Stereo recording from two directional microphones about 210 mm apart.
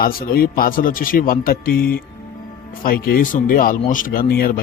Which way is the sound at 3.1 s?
40° left (ahead or behind).